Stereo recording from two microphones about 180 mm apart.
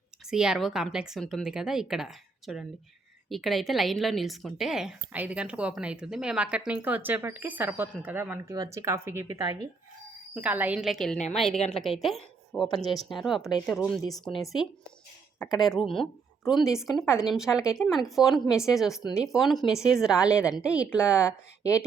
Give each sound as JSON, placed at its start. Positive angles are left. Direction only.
{"t": 0.3, "sound": "a woman's voice", "side_deg": -5}
{"t": 9.3, "sound": "speech", "side_deg": -25}
{"t": 10.3, "sound": "a woman's voice", "side_deg": -10}
{"t": 15.6, "sound": "a woman's voice", "side_deg": 0}